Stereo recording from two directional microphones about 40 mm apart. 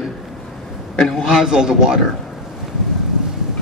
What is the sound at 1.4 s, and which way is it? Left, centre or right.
Speech, centre.